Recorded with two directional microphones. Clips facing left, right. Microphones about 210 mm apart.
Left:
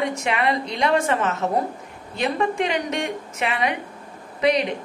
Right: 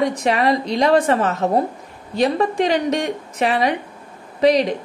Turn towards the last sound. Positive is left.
turn(degrees=-35)  # may be behind; listen again after turning